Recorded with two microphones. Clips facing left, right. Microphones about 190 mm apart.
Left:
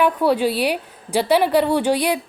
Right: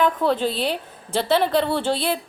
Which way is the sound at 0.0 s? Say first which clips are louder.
Left 3 dB; 10° left (ahead or behind).